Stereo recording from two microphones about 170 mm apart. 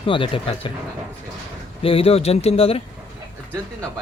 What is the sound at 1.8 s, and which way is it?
Speech, 35° left (ahead or behind).